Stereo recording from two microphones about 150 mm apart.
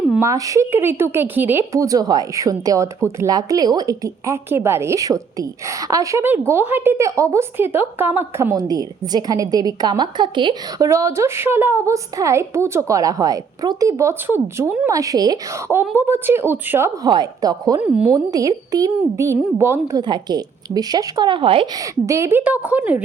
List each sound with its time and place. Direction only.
0.2 s a woman's voice: 20° right (ahead or behind)
15.7 s a woman's voice: 15° right (ahead or behind)
17.1 s a woman's voice: 25° right (ahead or behind)
17.7 s a woman's voice: 10° right (ahead or behind)
18.1 s a woman's voice: 25° right (ahead or behind)
20.0 s a woman's voice: 30° right (ahead or behind)
21.8 s a woman's voice: 20° right (ahead or behind)